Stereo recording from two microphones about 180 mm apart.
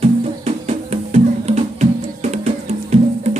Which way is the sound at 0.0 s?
35° right (ahead or behind).